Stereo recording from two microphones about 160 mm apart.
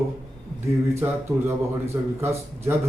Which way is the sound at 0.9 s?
15° right (ahead or behind).